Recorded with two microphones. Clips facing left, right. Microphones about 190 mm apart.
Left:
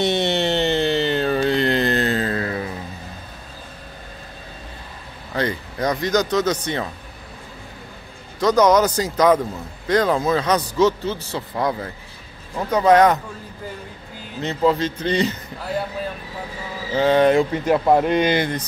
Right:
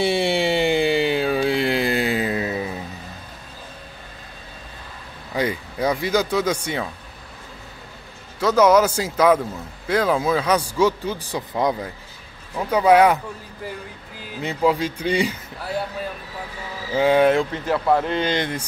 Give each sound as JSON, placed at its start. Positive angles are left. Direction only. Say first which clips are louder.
{"t": 0.0, "sound": "a sound", "louder": "even", "side_deg": -10}
{"t": 5.3, "sound": "speech", "louder": "even", "side_deg": -10}
{"t": 8.4, "sound": "speech", "louder": "even", "side_deg": -5}
{"t": 14.4, "sound": "speech", "louder": "left 1 dB", "side_deg": -10}
{"t": 16.9, "sound": "speech", "louder": "left 1 dB", "side_deg": -5}
{"t": 17.5, "sound": "speech", "louder": "left 3 dB", "side_deg": 15}